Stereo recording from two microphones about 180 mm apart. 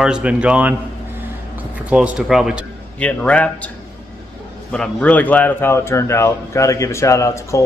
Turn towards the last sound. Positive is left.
turn(degrees=15)  # may be behind; listen again after turning